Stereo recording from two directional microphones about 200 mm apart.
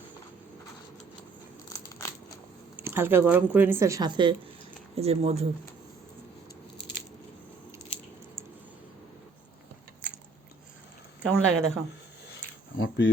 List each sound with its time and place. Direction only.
2.7 s speech: 10° right (ahead or behind); by 5.5 s 30° right (ahead or behind)
11.2 s speech: 5° right (ahead or behind)
12.3 s a sound: 60° left (ahead or behind)